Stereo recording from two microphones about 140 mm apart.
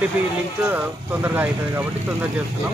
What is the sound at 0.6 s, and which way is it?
A man's voice, 10° right (ahead or behind).